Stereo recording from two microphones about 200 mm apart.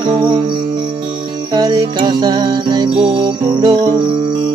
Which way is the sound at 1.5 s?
20° right (ahead or behind).